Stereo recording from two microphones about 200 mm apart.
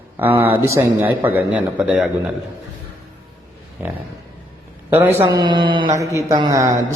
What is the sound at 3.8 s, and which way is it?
A man's voice, 10° right (ahead or behind).